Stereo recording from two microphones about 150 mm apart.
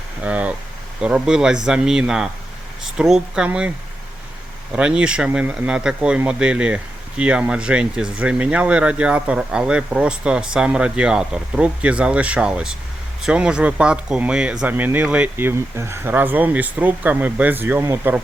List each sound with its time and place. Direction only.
0.2 s speech: 10° right (ahead or behind)
4.7 s speech: 5° right (ahead or behind)